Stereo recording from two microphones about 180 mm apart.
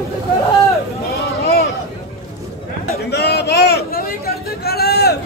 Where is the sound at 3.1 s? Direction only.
65° left (ahead or behind).